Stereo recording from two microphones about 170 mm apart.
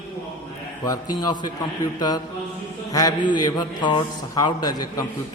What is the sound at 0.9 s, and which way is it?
A man's voice, 25° left (ahead or behind).